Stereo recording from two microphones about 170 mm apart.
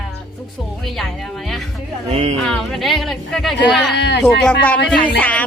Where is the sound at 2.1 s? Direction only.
40° right (ahead or behind).